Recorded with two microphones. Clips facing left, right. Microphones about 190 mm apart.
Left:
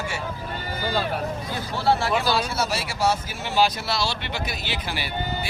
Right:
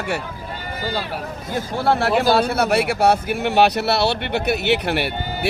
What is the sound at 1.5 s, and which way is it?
Speech, 55° right (ahead or behind).